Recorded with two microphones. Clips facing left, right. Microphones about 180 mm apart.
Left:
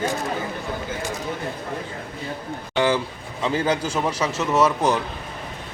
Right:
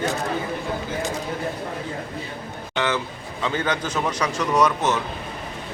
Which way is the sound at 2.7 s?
30° left (ahead or behind).